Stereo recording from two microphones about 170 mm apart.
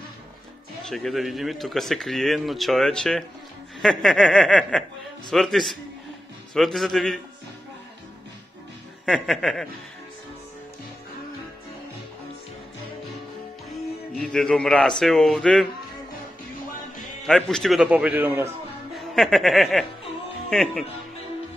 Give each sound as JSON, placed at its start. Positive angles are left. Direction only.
{"t": 0.8, "sound": "speech", "side_deg": 0}
{"t": 9.1, "sound": "speech", "side_deg": 0}
{"t": 13.7, "sound": "speech", "side_deg": 0}
{"t": 17.3, "sound": "a man's voice", "side_deg": 5}
{"t": 18.9, "sound": "speech", "side_deg": 0}